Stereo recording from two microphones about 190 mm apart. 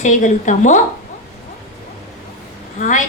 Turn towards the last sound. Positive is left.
turn(degrees=40)  # may be behind; listen again after turning